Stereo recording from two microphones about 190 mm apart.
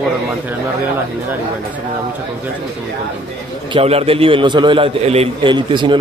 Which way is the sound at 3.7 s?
30° right (ahead or behind).